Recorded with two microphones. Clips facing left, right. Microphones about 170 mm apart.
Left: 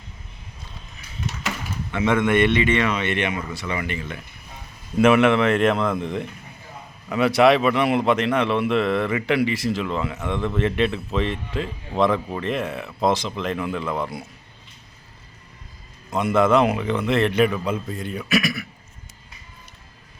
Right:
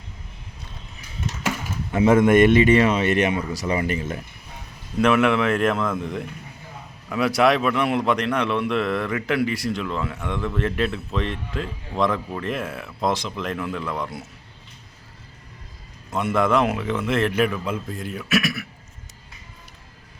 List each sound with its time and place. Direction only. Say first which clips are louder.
1.5 s speech: right 5 dB; 40° right (ahead or behind)
4.9 s a man's voice: left 3 dB; 5° left (ahead or behind)
16.1 s a man's voice: left 3 dB; centre (ahead or behind)